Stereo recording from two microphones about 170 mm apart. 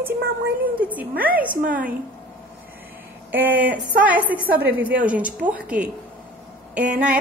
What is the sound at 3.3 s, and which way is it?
A woman's voice, 10° right (ahead or behind).